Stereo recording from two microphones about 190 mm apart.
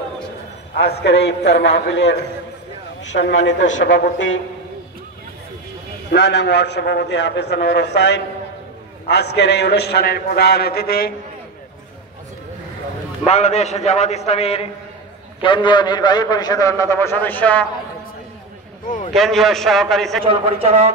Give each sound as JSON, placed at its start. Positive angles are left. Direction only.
{"t": 0.7, "sound": "a man's voice", "side_deg": 65}
{"t": 6.1, "sound": "a man's voice", "side_deg": 65}
{"t": 13.3, "sound": "a man's voice", "side_deg": 35}
{"t": 18.9, "sound": "a man's voice", "side_deg": 45}
{"t": 19.1, "sound": "a man's voice", "side_deg": 0}
{"t": 20.2, "sound": "a man's voice", "side_deg": -30}